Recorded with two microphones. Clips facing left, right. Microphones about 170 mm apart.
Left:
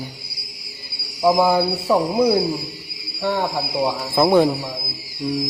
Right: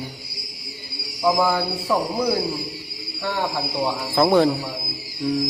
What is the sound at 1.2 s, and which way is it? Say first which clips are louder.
Speech: left 4 dB; 25° left (ahead or behind).